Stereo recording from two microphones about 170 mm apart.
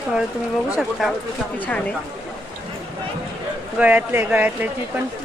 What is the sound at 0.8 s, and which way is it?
Speech, centre (ahead or behind).